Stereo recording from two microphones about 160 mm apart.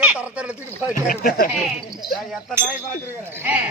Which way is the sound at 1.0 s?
60° left (ahead or behind).